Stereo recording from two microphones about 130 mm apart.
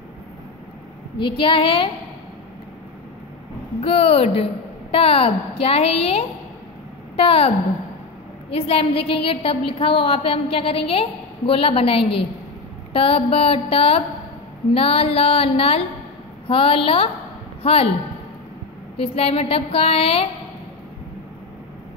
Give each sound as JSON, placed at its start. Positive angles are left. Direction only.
{"t": 1.1, "sound": "a woman's voice", "side_deg": 40}
{"t": 3.8, "sound": "a woman's voice", "side_deg": 50}
{"t": 8.5, "sound": "a woman's voice", "side_deg": 50}
{"t": 18.9, "sound": "a woman's voice", "side_deg": 50}